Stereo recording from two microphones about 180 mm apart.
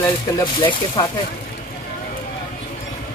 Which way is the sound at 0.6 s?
25° left (ahead or behind).